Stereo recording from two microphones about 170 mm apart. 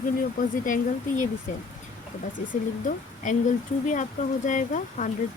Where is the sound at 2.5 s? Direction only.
50° left (ahead or behind).